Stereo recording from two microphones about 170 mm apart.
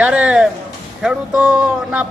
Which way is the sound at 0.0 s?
5° right (ahead or behind).